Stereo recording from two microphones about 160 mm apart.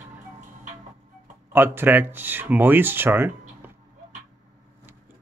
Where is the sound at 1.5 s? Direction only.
15° right (ahead or behind).